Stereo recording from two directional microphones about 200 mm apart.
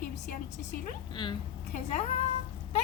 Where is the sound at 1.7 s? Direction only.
35° left (ahead or behind).